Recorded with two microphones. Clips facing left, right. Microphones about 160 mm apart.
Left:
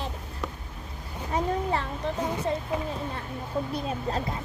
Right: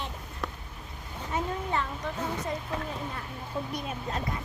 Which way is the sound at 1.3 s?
35° left (ahead or behind).